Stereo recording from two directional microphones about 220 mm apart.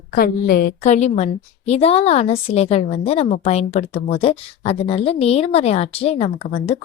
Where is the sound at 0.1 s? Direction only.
45° left (ahead or behind).